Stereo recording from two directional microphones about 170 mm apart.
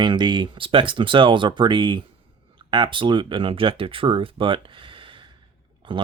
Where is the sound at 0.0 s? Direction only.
25° right (ahead or behind).